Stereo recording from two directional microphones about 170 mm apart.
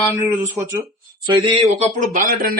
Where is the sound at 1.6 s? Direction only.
40° right (ahead or behind).